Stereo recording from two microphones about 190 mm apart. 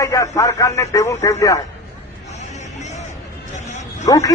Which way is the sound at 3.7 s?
40° left (ahead or behind).